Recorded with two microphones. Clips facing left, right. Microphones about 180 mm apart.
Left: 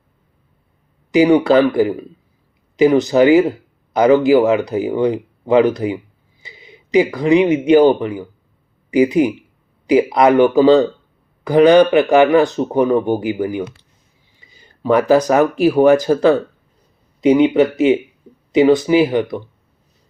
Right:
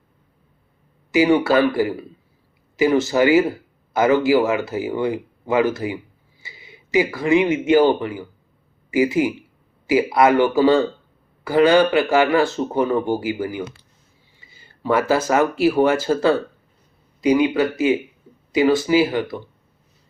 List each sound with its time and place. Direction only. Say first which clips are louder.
1.1 s speech: left 4 dB; 20° left (ahead or behind)